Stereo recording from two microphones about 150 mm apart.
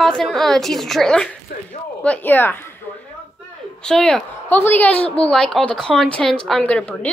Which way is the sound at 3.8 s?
5° left (ahead or behind).